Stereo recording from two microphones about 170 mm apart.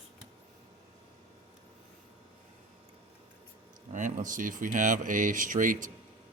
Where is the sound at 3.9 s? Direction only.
50° right (ahead or behind).